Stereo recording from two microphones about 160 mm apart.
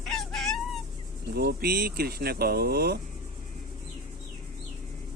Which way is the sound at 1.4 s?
80° right.